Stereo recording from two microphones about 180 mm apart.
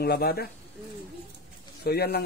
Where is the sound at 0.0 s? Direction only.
60° left (ahead or behind).